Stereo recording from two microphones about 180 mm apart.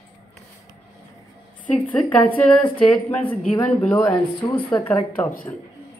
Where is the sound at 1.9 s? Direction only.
10° left (ahead or behind).